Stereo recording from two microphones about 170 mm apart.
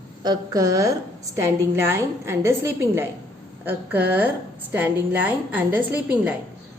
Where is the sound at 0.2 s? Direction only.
25° right (ahead or behind).